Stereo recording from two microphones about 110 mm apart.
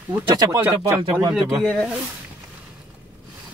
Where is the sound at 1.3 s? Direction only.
Centre (ahead or behind).